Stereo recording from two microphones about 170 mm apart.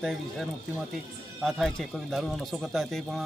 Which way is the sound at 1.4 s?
Centre (ahead or behind).